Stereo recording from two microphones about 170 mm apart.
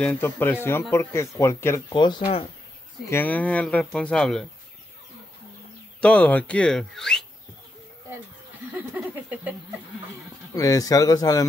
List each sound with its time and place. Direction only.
0.0 s speech: 10° left (ahead or behind)
1.9 s speech: 25° left (ahead or behind)
3.1 s speech: 10° left (ahead or behind)
5.9 s speech: 10° left (ahead or behind)
8.9 s a sound: 10° right (ahead or behind)
10.5 s speech: 20° left (ahead or behind)